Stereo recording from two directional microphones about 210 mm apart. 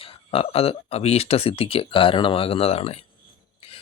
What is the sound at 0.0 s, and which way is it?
Speech, 25° left (ahead or behind).